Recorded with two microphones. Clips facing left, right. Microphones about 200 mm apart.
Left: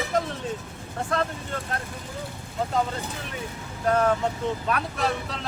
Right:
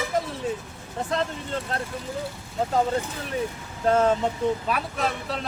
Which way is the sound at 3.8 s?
25° right (ahead or behind).